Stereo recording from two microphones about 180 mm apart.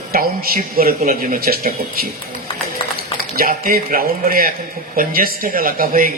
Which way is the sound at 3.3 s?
55° right (ahead or behind).